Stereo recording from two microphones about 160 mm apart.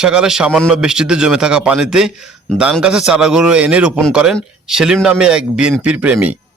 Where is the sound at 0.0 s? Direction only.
5° right (ahead or behind).